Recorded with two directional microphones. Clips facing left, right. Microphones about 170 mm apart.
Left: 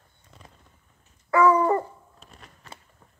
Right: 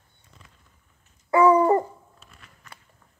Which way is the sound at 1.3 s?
30° right (ahead or behind).